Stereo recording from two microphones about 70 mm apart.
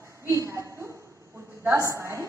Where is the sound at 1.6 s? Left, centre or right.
Right.